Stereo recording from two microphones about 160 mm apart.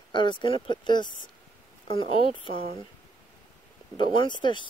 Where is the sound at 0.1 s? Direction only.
30° left (ahead or behind).